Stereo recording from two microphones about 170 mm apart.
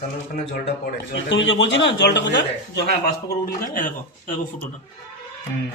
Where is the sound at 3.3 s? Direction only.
55° left (ahead or behind).